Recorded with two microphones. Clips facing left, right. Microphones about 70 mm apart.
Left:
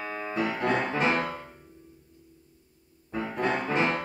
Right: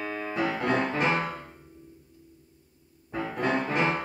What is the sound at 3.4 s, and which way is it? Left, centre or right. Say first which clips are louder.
Music: right 1 dB; centre.